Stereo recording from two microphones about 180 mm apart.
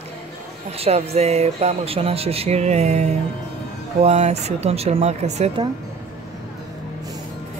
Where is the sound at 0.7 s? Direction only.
35° right (ahead or behind).